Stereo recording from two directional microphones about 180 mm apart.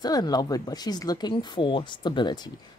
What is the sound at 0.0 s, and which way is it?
Speech, 20° left (ahead or behind).